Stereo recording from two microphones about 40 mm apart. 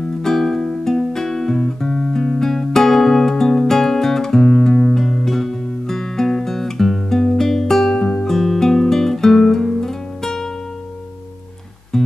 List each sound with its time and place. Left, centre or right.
0.2 s music: centre
1.9 s guitar: centre
2.2 s music: centre
8.3 s guitar: centre